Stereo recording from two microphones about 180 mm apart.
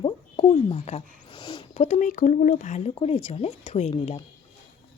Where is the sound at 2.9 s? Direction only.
30° left (ahead or behind).